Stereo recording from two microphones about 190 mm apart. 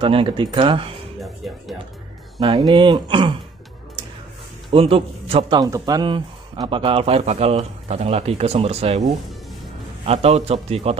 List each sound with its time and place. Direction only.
0.0 s speech: 25° right (ahead or behind)
1.4 s music: centre (ahead or behind)
2.4 s speech: 20° right (ahead or behind)
4.6 s a man's voice: 30° right (ahead or behind)
10.0 s a man's voice: 30° right (ahead or behind)